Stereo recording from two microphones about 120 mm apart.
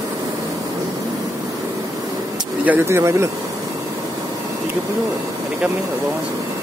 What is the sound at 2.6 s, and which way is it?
Speech, 20° right (ahead or behind).